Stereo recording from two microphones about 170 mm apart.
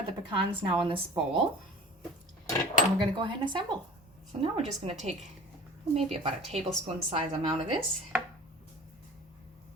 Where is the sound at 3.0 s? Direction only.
30° right (ahead or behind).